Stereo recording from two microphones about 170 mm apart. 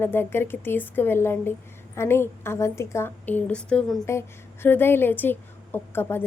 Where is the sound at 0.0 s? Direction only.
15° left (ahead or behind).